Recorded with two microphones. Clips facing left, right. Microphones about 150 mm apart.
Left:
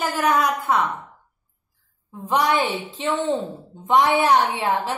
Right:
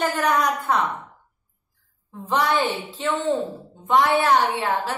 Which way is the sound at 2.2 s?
10° left (ahead or behind).